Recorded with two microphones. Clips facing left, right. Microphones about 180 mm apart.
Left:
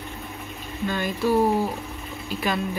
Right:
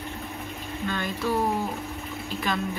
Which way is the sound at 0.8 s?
10° left (ahead or behind).